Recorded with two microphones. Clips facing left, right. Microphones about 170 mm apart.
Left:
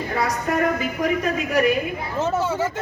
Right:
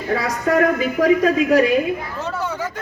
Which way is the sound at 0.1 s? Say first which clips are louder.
Right 6 dB; 90° right.